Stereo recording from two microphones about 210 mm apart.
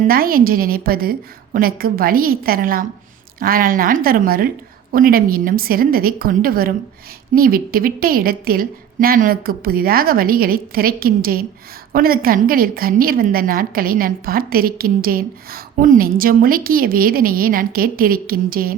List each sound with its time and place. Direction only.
0.1 s a woman's voice: 45° right (ahead or behind)